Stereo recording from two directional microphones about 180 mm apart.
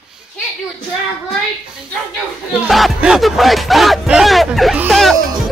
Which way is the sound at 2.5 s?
Centre (ahead or behind).